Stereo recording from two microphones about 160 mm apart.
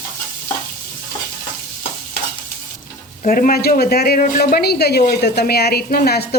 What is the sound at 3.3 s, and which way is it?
Speech, 60° left (ahead or behind).